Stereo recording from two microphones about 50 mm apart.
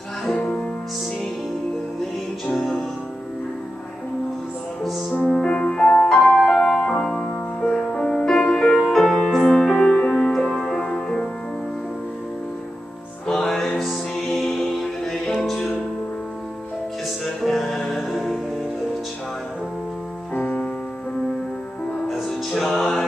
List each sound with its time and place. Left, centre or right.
0.3 s music: left
2.5 s music: centre
5.4 s music: centre
8.8 s music: centre
13.3 s music: centre
17.4 s music: centre
22.0 s music: centre